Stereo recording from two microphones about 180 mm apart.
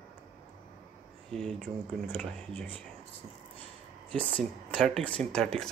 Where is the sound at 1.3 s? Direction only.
Centre (ahead or behind).